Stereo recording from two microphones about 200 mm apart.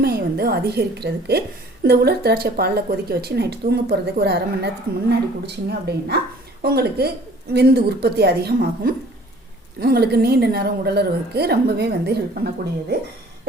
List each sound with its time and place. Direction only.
0.0 s a woman's voice: 50° right (ahead or behind)